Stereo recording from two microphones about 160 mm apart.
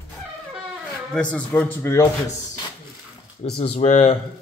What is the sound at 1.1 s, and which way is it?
Speech, 10° left (ahead or behind).